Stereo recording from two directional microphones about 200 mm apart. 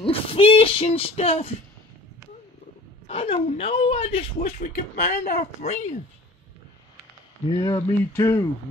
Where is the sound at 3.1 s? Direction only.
30° left (ahead or behind).